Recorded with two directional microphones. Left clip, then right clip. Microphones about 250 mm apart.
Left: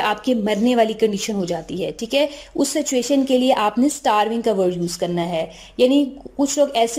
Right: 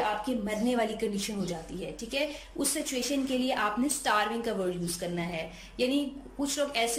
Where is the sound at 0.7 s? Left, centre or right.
Left.